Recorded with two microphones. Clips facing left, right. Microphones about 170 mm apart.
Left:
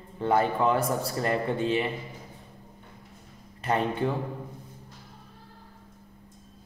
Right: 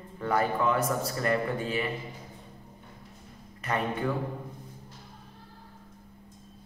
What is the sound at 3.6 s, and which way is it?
Speech, 30° left (ahead or behind).